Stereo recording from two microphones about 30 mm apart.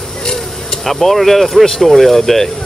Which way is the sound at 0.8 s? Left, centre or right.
Centre.